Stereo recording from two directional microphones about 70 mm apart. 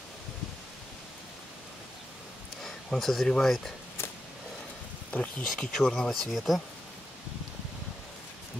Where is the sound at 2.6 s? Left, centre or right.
Centre.